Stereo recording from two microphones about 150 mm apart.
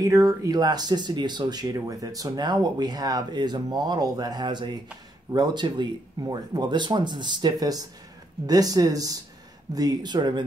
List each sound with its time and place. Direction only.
0.0 s speech: 20° right (ahead or behind)